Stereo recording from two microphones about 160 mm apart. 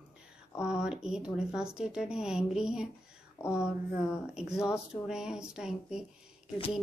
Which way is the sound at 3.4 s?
15° left (ahead or behind).